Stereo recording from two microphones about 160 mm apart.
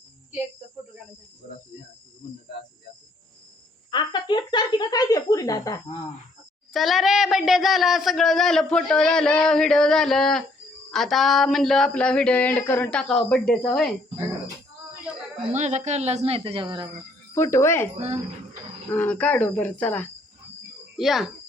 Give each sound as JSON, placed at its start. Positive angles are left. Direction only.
{"t": 3.9, "sound": "speech", "side_deg": 30}
{"t": 6.7, "sound": "speech", "side_deg": 0}
{"t": 15.5, "sound": "speech", "side_deg": -45}
{"t": 17.3, "sound": "speech", "side_deg": 15}
{"t": 17.9, "sound": "speech", "side_deg": -35}
{"t": 18.9, "sound": "speech", "side_deg": 10}
{"t": 20.9, "sound": "speech", "side_deg": 0}